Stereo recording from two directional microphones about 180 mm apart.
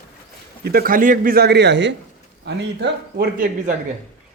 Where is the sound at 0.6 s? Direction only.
55° right (ahead or behind); by 3.3 s 70° right (ahead or behind).